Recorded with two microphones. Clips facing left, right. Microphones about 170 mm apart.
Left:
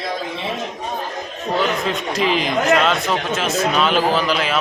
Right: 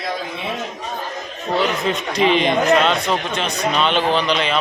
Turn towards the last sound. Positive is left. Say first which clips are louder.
# even
turn(degrees=5)  # may be behind; listen again after turning